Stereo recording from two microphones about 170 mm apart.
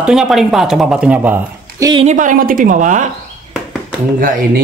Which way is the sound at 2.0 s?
50° right (ahead or behind).